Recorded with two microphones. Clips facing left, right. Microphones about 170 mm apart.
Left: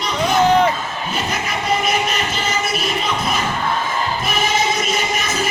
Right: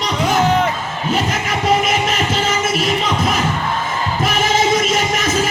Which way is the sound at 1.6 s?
90° right.